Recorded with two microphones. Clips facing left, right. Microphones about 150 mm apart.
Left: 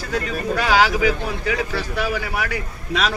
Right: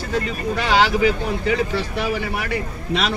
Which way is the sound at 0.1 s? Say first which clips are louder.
Even; 25° right (ahead or behind).